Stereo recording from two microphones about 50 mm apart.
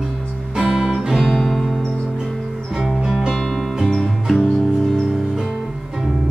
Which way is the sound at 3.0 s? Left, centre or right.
Centre.